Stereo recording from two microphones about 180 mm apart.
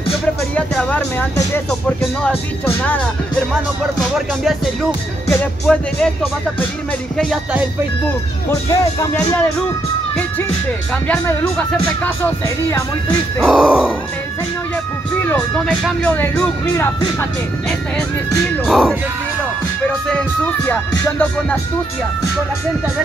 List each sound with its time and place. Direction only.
0.6 s music: 5° left (ahead or behind)
5.3 s music: 5° left (ahead or behind)
8.5 s music: 15° left (ahead or behind)
11.1 s speech: 5° left (ahead or behind)
13.4 s speech: centre (ahead or behind)
15.2 s music: 10° left (ahead or behind)
17.2 s speech: 5° left (ahead or behind)
20.1 s music: 10° left (ahead or behind)